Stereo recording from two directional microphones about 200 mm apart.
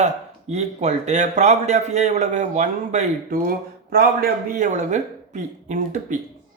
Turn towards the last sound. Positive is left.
turn(degrees=-40)  # may be behind; listen again after turning